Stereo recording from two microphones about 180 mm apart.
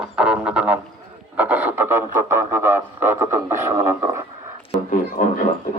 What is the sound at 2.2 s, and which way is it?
A man's voice, 15° right (ahead or behind).